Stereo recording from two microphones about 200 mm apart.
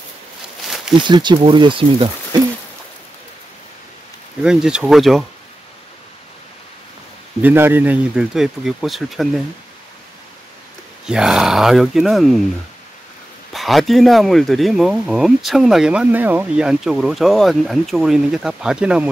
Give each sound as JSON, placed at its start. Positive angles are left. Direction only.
{"t": 1.0, "sound": "speech", "side_deg": -20}
{"t": 4.4, "sound": "speech", "side_deg": -5}
{"t": 7.4, "sound": "speech", "side_deg": -10}
{"t": 11.1, "sound": "speech", "side_deg": -5}
{"t": 13.5, "sound": "speech", "side_deg": 0}